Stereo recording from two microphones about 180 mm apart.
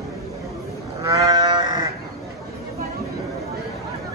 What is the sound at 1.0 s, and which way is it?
Sheep, 20° right (ahead or behind).